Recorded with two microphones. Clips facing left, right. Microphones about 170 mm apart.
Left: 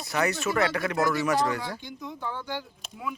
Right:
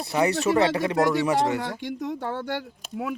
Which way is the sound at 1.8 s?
80° right.